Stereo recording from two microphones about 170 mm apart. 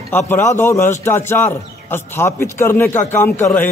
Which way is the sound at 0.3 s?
15° left (ahead or behind).